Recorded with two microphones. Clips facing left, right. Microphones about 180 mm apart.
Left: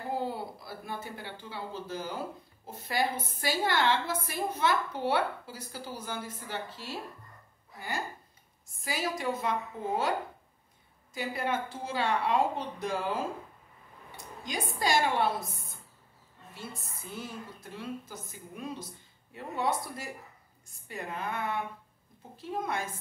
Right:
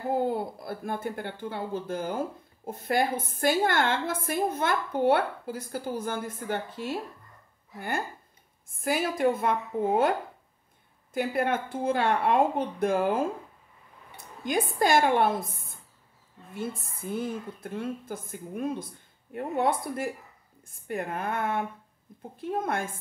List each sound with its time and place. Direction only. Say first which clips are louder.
0.1 s speech: right 7 dB; 50° right (ahead or behind)
8.6 s speech: right 6 dB; 55° right (ahead or behind)
11.1 s speech: right 5 dB; 55° right (ahead or behind)